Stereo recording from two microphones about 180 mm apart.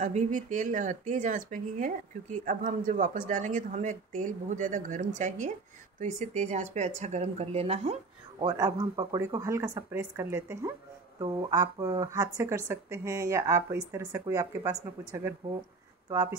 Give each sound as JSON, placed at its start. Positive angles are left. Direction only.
{"t": 0.0, "sound": "speech", "side_deg": -40}
{"t": 8.5, "sound": "speech", "side_deg": -20}